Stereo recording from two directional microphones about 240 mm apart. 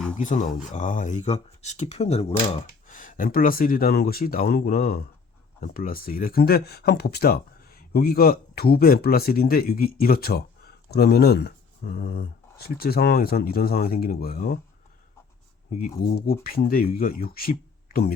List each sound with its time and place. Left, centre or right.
0.2 s speech: left
15.8 s speech: left